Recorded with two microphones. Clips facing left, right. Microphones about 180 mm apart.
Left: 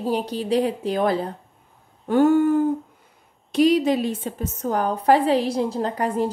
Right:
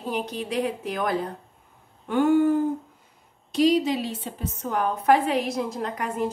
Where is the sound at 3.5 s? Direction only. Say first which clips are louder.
Left 3 dB; 60° left (ahead or behind).